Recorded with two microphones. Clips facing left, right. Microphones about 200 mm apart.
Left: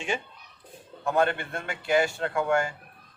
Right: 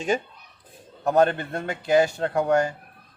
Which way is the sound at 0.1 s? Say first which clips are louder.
Right 6 dB; 40° right (ahead or behind).